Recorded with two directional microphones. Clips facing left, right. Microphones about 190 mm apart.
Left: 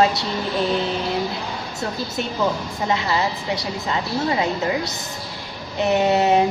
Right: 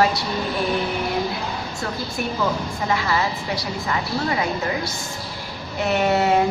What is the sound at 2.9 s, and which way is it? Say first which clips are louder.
A woman's voice: left 1 dB; 20° left (ahead or behind).